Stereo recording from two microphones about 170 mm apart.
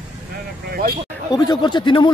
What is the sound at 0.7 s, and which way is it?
Speech, 60° right (ahead or behind).